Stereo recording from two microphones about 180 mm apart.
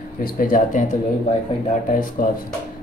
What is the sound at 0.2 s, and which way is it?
Speech, 50° left (ahead or behind).